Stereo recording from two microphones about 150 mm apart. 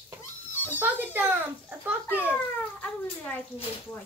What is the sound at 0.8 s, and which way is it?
Speech, 10° right (ahead or behind).